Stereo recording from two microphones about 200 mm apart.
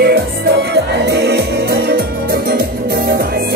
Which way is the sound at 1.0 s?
55° right (ahead or behind).